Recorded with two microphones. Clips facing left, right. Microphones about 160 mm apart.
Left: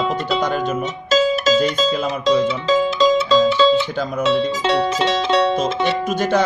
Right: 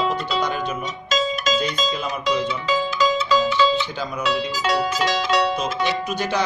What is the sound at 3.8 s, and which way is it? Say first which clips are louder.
Music: left 5 dB; 50° left (ahead or behind).